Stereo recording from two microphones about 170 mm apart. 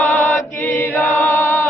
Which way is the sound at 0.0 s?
10° left (ahead or behind).